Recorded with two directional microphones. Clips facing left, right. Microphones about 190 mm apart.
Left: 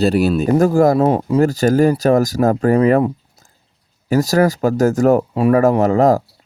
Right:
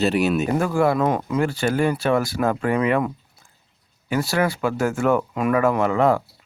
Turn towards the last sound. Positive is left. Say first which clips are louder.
# left 6 dB
turn(degrees=40)  # may be behind; listen again after turning